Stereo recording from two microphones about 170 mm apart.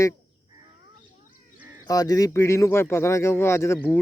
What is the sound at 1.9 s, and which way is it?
Speech, 20° left (ahead or behind).